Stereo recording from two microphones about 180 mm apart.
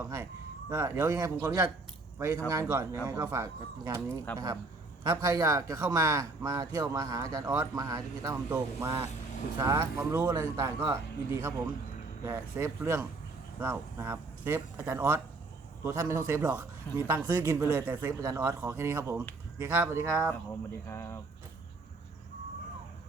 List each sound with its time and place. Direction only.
0.0 s speech: 15° right (ahead or behind)
4.3 s speech: 10° left (ahead or behind)
5.0 s speech: 15° right (ahead or behind)
20.8 s speech: 15° left (ahead or behind)